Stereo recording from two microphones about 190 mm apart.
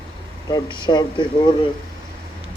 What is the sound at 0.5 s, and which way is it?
Speech, 25° left (ahead or behind).